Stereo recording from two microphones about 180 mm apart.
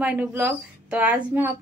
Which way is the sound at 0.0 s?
10° right (ahead or behind).